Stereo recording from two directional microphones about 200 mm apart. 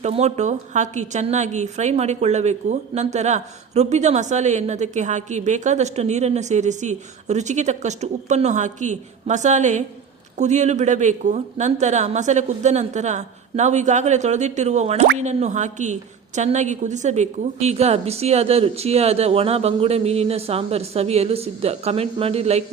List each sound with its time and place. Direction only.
0.0 s a woman's voice: 30° right (ahead or behind)